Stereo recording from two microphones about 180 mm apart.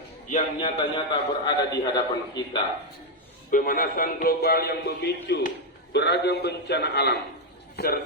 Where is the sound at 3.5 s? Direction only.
50° left (ahead or behind).